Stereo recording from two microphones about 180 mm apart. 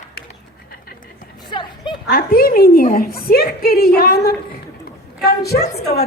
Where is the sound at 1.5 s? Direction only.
25° left (ahead or behind).